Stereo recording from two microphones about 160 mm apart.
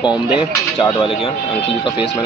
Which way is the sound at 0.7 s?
35° left (ahead or behind).